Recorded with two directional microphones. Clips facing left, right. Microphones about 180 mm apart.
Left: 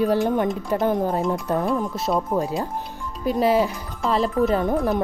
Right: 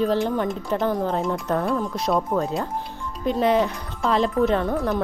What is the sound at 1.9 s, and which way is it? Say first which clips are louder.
Speech: right 1 dB; 5° left (ahead or behind).